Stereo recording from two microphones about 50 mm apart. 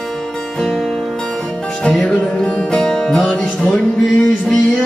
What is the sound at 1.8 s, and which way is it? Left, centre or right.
Music, centre.